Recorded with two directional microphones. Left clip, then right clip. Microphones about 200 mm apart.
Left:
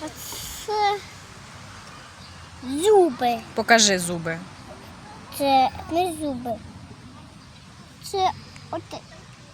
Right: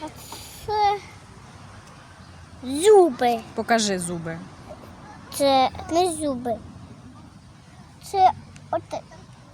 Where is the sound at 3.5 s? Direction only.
5° left (ahead or behind).